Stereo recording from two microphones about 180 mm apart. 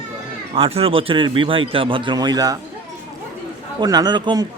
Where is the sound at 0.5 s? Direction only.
30° right (ahead or behind).